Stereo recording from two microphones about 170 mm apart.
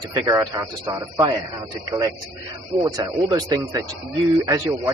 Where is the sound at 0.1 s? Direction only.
20° right (ahead or behind).